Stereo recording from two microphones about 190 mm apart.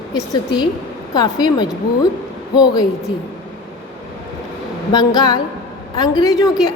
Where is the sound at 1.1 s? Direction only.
20° left (ahead or behind).